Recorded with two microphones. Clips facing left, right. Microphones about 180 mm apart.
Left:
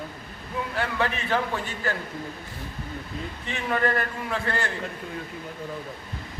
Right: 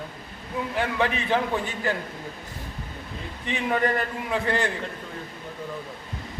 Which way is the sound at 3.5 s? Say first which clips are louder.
Right 1 dB; 15° right (ahead or behind).